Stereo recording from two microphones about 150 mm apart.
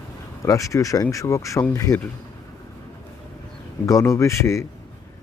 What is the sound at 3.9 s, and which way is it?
Speech, 20° left (ahead or behind).